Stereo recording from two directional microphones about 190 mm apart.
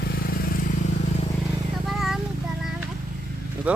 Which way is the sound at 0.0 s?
55° left (ahead or behind).